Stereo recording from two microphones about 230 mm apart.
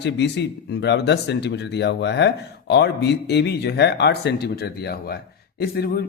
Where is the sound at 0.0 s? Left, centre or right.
Left.